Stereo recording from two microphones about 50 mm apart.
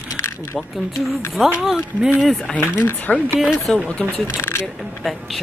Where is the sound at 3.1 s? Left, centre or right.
Centre.